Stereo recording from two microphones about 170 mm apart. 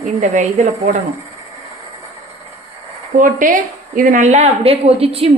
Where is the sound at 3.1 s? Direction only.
50° right (ahead or behind).